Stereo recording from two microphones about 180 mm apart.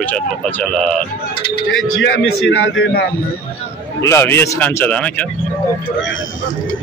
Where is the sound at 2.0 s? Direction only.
90° left.